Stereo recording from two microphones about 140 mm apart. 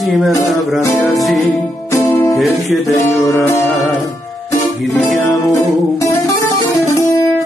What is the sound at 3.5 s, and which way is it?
Music, 15° left (ahead or behind).